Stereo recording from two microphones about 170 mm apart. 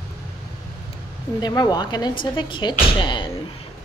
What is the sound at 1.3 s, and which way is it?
Speech, 25° left (ahead or behind).